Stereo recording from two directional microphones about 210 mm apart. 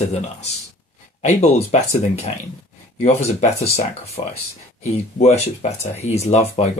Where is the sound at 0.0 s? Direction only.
30° left (ahead or behind).